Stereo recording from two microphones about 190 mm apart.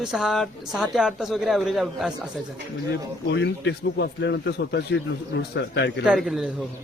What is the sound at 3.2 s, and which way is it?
Speech, 65° left (ahead or behind).